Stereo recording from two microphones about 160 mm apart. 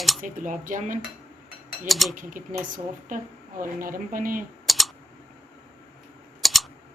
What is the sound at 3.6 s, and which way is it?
Speech, 60° right (ahead or behind).